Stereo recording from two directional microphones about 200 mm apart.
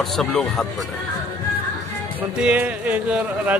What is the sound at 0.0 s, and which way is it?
Speech, centre (ahead or behind).